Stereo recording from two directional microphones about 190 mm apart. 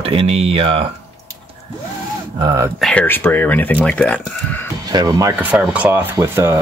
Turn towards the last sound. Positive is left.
turn(degrees=-15)  # may be behind; listen again after turning